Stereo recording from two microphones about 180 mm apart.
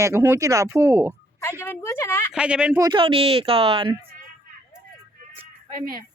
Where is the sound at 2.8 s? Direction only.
25° right (ahead or behind).